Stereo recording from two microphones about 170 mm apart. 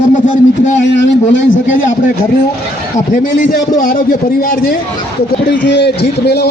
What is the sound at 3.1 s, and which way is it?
A man's voice, 55° left (ahead or behind).